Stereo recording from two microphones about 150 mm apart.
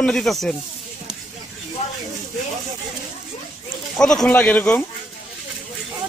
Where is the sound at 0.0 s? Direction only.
5° left (ahead or behind).